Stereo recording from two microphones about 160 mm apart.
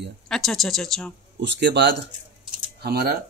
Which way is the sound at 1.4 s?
90° right.